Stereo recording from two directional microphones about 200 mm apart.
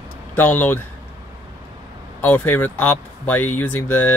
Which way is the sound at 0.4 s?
10° left (ahead or behind).